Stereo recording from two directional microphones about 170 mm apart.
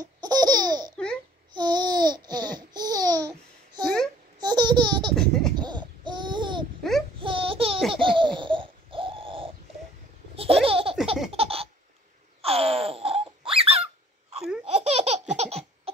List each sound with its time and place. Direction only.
0.0 s laughter: 25° right (ahead or behind)
1.5 s babbling: 25° right (ahead or behind)
5.1 s baby laughter: 5° left (ahead or behind)
5.6 s babbling: 25° right (ahead or behind)
6.8 s a sound: 5° left (ahead or behind)
7.2 s a sound: 30° right (ahead or behind)
7.9 s laughter: 30° right (ahead or behind)
12.4 s a sound: 35° right (ahead or behind)
14.6 s laughter: 35° right (ahead or behind)